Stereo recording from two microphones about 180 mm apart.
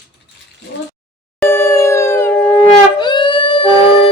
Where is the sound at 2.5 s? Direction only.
25° left (ahead or behind).